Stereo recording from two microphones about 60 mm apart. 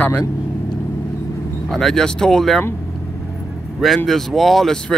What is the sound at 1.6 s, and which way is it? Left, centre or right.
Speech, centre.